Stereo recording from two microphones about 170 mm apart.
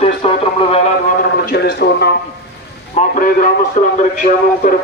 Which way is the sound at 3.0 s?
55° left (ahead or behind).